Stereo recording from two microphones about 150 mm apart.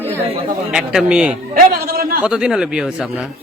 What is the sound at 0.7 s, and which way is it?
Speech, 5° right (ahead or behind).